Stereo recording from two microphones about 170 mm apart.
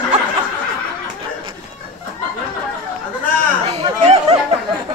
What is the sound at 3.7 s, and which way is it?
Chatter, 40° right (ahead or behind).